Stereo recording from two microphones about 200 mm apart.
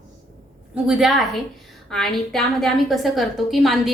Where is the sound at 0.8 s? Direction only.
Centre (ahead or behind).